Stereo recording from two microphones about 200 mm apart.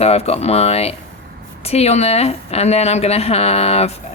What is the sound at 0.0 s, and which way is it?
A woman's voice, 30° left (ahead or behind).